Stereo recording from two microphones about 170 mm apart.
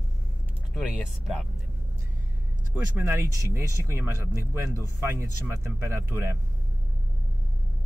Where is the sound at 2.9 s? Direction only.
15° right (ahead or behind).